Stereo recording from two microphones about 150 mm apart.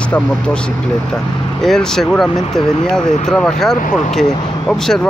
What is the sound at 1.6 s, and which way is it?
Speech, centre (ahead or behind).